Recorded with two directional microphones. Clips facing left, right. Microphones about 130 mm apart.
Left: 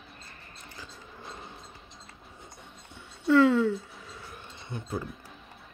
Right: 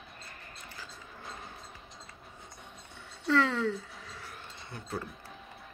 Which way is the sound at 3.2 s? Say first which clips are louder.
Left 7 dB; 15° left (ahead or behind).